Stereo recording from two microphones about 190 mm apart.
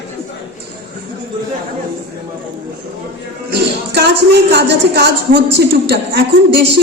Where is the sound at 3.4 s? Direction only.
60° right (ahead or behind).